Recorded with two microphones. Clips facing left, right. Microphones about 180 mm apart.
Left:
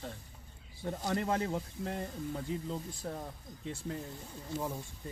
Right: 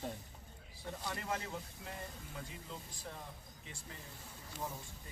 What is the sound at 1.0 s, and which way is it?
Speech, 65° left (ahead or behind).